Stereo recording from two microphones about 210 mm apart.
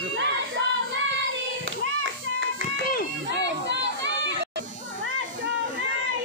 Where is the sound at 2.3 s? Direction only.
65° right (ahead or behind).